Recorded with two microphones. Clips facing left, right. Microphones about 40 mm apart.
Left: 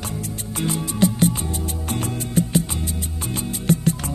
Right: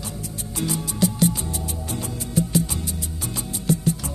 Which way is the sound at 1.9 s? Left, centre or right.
Left.